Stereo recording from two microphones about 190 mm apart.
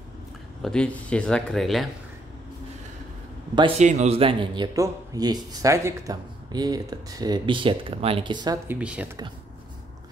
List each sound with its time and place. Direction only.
0.6 s speech: 5° left (ahead or behind)
3.5 s a man's voice: 30° right (ahead or behind)
8.6 s speech: 5° right (ahead or behind)